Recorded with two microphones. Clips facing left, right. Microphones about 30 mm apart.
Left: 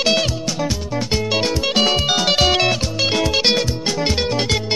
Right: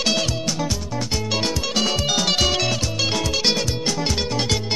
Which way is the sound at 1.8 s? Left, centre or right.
Left.